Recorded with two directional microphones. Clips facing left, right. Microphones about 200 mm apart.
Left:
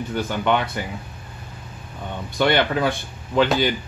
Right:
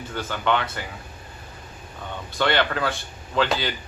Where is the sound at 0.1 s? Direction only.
15° left (ahead or behind).